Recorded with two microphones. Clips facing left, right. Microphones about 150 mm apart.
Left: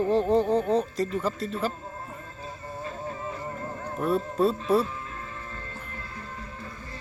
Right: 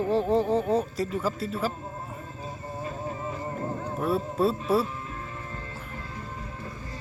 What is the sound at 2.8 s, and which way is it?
Music, 10° right (ahead or behind).